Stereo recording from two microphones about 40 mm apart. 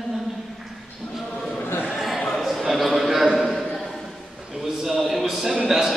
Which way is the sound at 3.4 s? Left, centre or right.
Centre.